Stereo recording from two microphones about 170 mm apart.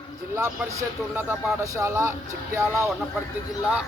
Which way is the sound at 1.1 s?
10° right (ahead or behind).